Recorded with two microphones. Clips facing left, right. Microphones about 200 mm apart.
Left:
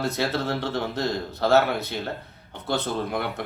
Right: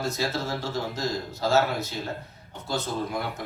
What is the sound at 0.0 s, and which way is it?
Speech, 60° left (ahead or behind).